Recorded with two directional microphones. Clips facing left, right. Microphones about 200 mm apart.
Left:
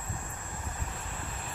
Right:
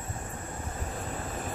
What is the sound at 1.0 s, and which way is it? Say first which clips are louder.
Vehicle: right 6 dB; 40° right (ahead or behind).